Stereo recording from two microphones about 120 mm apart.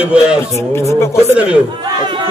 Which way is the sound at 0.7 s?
20° left (ahead or behind).